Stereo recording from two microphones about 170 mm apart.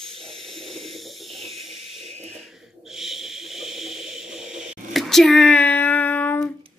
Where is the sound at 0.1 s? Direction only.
35° right (ahead or behind).